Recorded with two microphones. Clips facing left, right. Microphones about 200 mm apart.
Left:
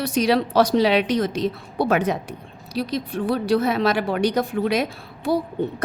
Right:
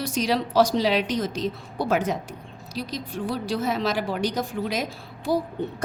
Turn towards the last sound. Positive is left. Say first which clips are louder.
# left 3 dB
turn(degrees=65)  # may be behind; listen again after turning